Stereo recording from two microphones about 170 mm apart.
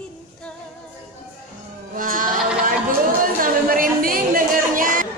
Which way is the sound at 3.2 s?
55° right (ahead or behind).